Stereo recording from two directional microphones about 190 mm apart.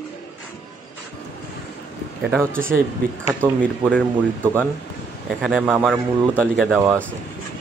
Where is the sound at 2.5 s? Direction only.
45° right (ahead or behind).